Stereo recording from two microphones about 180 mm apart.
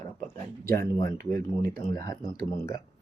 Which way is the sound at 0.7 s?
15° left (ahead or behind).